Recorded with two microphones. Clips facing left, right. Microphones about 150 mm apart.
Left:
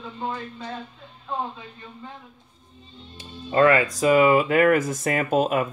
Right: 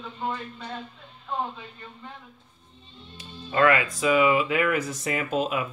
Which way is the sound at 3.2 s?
30° left (ahead or behind).